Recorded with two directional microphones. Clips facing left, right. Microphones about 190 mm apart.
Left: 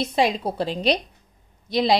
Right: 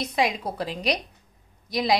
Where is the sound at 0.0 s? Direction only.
30° left (ahead or behind).